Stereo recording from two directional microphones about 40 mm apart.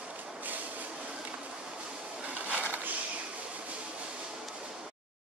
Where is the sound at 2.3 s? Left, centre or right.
Right.